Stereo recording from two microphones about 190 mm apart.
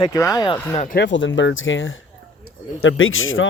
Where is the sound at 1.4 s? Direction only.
85° left.